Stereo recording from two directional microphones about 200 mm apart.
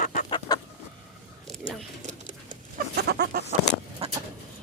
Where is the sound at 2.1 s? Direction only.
35° right (ahead or behind).